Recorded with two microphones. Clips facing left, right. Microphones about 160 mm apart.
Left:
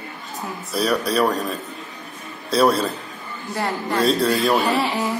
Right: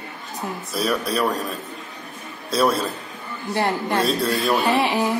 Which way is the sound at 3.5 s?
25° right (ahead or behind).